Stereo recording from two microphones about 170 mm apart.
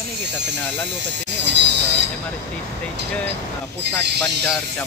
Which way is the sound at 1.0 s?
90° right.